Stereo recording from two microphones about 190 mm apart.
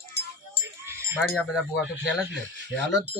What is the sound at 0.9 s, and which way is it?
Sheep, 15° right (ahead or behind).